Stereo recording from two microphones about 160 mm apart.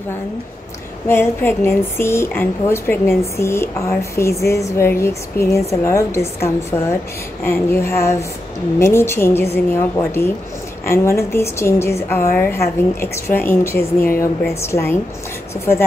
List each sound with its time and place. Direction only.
1.0 s a woman's voice: 15° left (ahead or behind)